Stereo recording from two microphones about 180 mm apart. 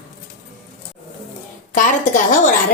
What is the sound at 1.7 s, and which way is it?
Speech, 45° left (ahead or behind).